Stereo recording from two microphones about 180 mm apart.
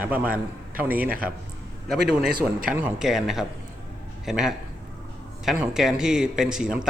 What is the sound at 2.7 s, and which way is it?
A man's voice, 5° right (ahead or behind).